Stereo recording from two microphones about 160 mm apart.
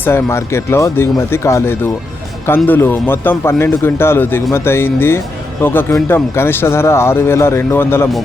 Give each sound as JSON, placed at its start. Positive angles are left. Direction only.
{"t": 0.0, "sound": "speech", "side_deg": 15}